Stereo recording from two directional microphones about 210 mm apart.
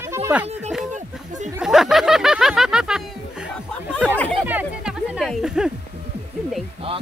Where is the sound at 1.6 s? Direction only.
Centre (ahead or behind).